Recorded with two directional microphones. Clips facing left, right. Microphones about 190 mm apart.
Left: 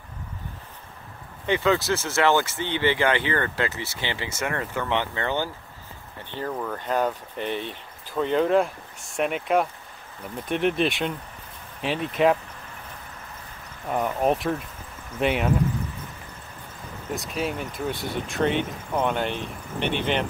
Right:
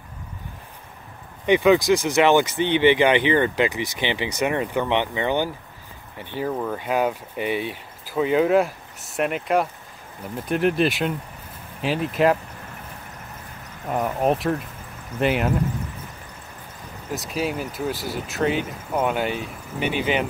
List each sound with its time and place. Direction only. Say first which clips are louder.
1.4 s speech: right 6 dB; 15° right (ahead or behind)
13.8 s speech: right 1 dB; centre (ahead or behind)
17.1 s speech: right 2 dB; centre (ahead or behind)